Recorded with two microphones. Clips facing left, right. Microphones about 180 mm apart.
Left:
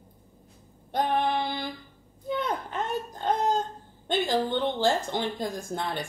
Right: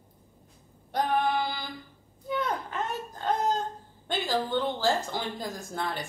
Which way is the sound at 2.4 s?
20° left (ahead or behind).